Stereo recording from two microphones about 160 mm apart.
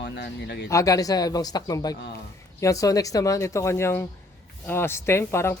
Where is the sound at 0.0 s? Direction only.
90° left.